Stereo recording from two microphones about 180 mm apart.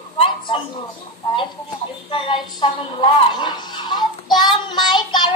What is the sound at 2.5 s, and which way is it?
A child's voice, 25° left (ahead or behind).